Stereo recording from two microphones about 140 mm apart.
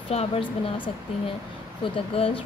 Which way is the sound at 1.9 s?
40° left (ahead or behind).